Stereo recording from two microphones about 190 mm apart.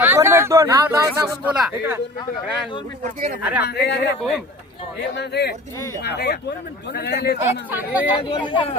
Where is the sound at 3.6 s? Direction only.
60° left (ahead or behind).